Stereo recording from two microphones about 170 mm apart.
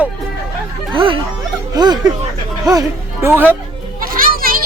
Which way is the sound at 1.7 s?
25° right (ahead or behind).